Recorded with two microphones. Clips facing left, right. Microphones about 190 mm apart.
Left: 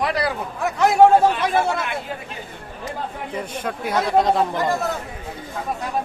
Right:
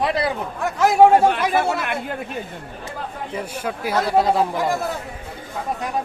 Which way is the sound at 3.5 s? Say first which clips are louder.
Right 1 dB; 5° right (ahead or behind).